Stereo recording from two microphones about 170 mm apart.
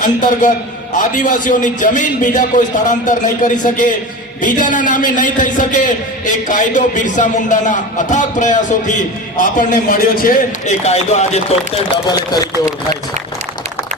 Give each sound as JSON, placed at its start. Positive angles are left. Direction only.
{"t": 0.0, "sound": "a man's voice", "side_deg": 50}
{"t": 10.8, "sound": "chopping", "side_deg": 40}